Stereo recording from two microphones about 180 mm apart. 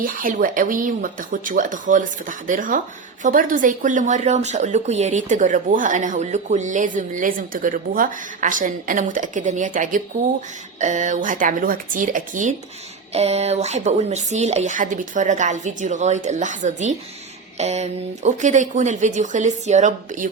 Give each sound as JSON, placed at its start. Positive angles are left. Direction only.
{"t": 0.0, "sound": "speech", "side_deg": -50}